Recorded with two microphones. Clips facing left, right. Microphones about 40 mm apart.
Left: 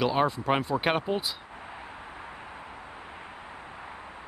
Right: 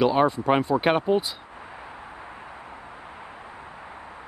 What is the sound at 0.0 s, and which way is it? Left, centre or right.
Speech, centre.